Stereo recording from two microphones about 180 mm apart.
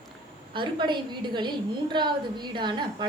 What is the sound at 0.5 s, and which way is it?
A woman's voice, 25° right (ahead or behind).